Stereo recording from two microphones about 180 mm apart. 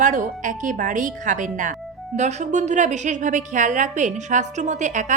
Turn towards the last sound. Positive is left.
turn(degrees=-40)  # may be behind; listen again after turning